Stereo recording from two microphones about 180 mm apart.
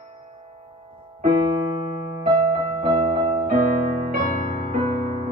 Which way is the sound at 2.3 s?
25° right (ahead or behind).